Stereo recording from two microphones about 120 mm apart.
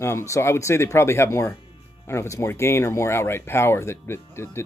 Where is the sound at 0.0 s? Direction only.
25° left (ahead or behind).